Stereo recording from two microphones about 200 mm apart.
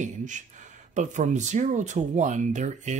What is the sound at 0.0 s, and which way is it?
Speech, 40° right (ahead or behind).